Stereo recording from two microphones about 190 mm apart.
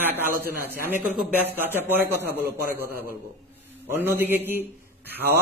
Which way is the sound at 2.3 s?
55° right (ahead or behind).